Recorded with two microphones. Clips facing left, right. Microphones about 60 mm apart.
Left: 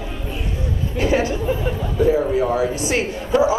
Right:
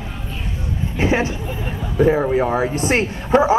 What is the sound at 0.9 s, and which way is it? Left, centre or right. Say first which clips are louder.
Speech: even; right.